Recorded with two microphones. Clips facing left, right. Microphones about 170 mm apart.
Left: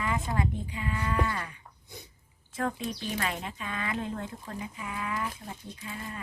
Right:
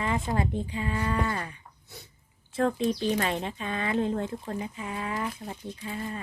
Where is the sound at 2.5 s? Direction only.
30° right (ahead or behind).